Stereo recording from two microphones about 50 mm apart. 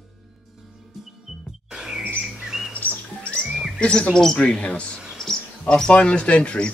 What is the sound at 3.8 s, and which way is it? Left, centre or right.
Speech, centre.